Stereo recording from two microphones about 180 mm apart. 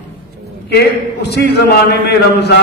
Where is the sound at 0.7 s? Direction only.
65° left (ahead or behind).